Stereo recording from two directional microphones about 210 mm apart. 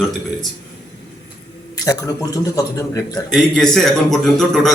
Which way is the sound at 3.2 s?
Centre (ahead or behind).